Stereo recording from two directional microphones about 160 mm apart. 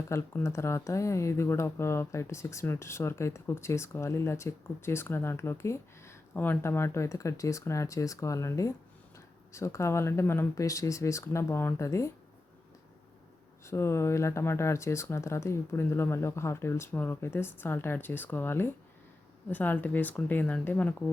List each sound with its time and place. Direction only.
0.1 s speech: 15° left (ahead or behind)
13.7 s speech: 15° left (ahead or behind)